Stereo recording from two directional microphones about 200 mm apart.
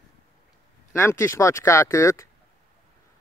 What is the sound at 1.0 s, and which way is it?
Speech, 15° left (ahead or behind).